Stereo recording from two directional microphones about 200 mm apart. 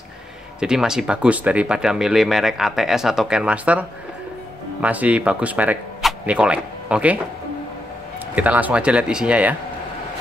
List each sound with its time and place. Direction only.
0.6 s speech: 5° right (ahead or behind)
4.8 s speech: 5° right (ahead or behind)
8.4 s speech: 10° right (ahead or behind)